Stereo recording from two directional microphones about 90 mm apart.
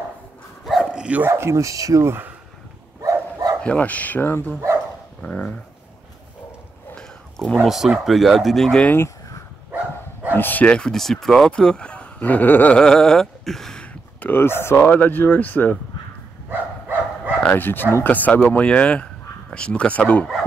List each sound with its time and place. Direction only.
0.7 s dog: centre (ahead or behind)
1.0 s speech: 15° right (ahead or behind)
1.3 s speech: 30° right (ahead or behind)
3.0 s dog: 45° right (ahead or behind)
3.6 s speech: 15° left (ahead or behind)
7.0 s a sound: 10° left (ahead or behind)
7.6 s speech: 5° right (ahead or behind)
8.8 s speech: 25° left (ahead or behind)
10.3 s speech: 20° left (ahead or behind)
12.7 s a sound: 10° left (ahead or behind)
14.2 s speech: 25° left (ahead or behind)
16.4 s a sound: 20° right (ahead or behind)
17.4 s speech: 20° left (ahead or behind)